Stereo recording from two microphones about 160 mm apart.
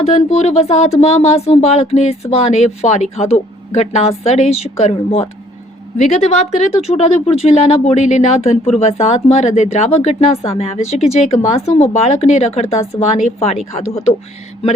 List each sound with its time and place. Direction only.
0.0 s speech: 40° left (ahead or behind)